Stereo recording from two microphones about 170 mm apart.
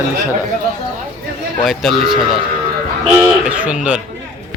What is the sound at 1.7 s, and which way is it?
Speech, centre (ahead or behind).